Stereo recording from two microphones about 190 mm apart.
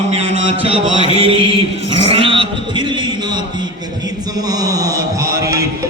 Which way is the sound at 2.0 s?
30° right (ahead or behind).